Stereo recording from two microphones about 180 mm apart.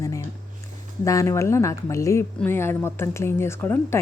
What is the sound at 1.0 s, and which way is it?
Speech, 15° left (ahead or behind).